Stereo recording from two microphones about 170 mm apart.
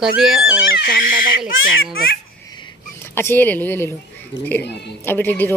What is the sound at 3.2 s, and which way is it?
A woman's voice, 10° left (ahead or behind).